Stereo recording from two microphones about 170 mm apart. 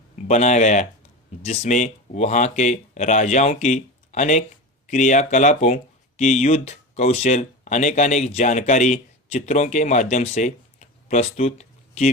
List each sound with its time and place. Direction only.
0.3 s speech: 40° left (ahead or behind)